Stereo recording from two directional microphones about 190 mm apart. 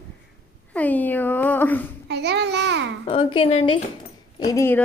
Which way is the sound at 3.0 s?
25° left (ahead or behind).